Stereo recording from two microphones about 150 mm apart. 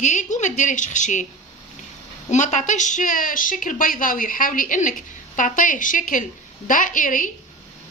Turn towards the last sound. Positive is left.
turn(degrees=60)  # may be behind; listen again after turning